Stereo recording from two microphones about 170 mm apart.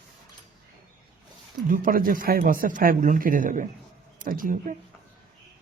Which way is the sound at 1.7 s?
55° right (ahead or behind).